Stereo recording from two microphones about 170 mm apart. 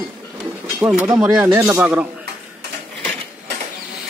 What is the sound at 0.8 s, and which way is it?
Speech, 10° right (ahead or behind).